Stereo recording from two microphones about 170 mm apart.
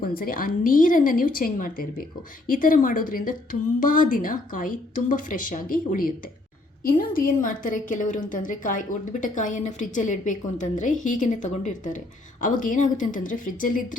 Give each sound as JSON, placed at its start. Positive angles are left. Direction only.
{"t": 0.0, "sound": "a woman's voice", "side_deg": 60}